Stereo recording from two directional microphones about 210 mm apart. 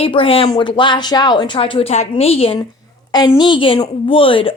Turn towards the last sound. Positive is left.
turn(degrees=25)  # may be behind; listen again after turning